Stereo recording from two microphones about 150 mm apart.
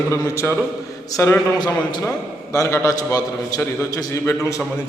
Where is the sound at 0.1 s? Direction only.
20° left (ahead or behind).